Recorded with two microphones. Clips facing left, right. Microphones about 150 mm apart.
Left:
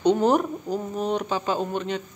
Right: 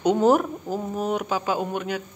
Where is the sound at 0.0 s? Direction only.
5° right (ahead or behind).